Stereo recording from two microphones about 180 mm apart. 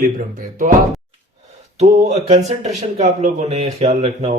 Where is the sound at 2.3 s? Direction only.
40° right (ahead or behind).